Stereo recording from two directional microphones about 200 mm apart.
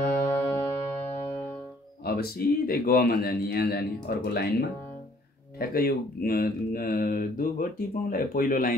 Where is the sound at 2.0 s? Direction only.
50° left (ahead or behind).